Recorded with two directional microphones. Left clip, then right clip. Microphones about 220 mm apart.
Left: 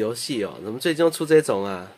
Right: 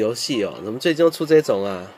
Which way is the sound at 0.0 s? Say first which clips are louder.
Right 4 dB; 15° right (ahead or behind).